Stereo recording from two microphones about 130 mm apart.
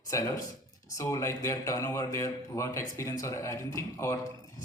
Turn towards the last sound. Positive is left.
turn(degrees=25)  # may be behind; listen again after turning